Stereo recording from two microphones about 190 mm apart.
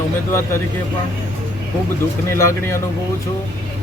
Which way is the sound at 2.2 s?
15° left (ahead or behind).